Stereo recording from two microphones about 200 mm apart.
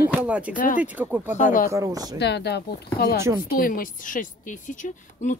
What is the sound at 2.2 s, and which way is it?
A woman's voice, 55° left (ahead or behind).